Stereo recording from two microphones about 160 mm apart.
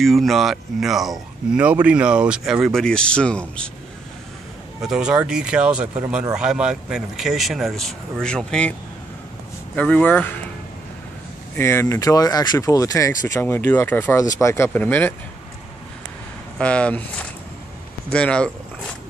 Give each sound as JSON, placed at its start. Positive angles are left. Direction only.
{"t": 0.0, "sound": "speech", "side_deg": 0}
{"t": 4.8, "sound": "speech", "side_deg": -5}
{"t": 9.8, "sound": "speech", "side_deg": 10}
{"t": 11.5, "sound": "speech", "side_deg": 15}
{"t": 16.5, "sound": "speech", "side_deg": 5}